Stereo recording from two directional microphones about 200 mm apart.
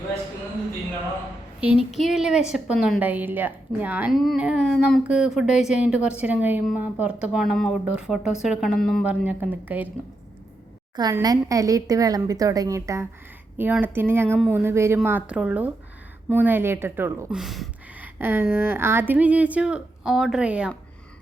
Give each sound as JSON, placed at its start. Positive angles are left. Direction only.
{"t": 1.6, "sound": "speech", "side_deg": -5}
{"t": 9.0, "sound": "a woman's voice", "side_deg": -10}
{"t": 10.9, "sound": "a woman's voice", "side_deg": -20}